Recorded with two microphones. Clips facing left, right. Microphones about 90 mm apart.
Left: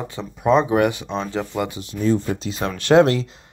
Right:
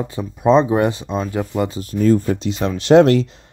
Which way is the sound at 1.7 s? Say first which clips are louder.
Right 6 dB; 45° right (ahead or behind).